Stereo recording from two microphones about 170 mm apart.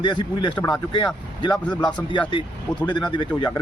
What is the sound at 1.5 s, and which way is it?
Speech, 5° left (ahead or behind).